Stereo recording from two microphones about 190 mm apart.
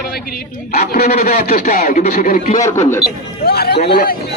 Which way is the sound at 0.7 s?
55° left (ahead or behind).